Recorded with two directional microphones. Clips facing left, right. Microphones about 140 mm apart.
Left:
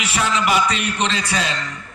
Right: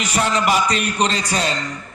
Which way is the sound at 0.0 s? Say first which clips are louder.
Right 2 dB; 40° right (ahead or behind).